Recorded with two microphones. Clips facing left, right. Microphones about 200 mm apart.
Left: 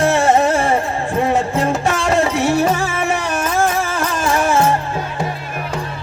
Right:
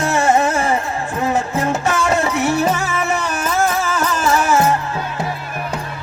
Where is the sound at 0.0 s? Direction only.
30° left (ahead or behind).